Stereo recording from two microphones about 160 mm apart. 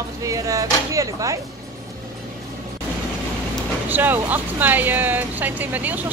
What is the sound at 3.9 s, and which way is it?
Speech, 10° right (ahead or behind).